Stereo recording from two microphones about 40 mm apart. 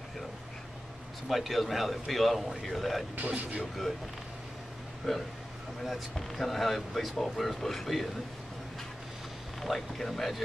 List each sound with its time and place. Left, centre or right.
1.3 s speech: centre
3.2 s speech: right
5.1 s speech: centre
9.6 s speech: centre